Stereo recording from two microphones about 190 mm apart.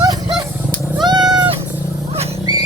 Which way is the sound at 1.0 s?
20° right (ahead or behind).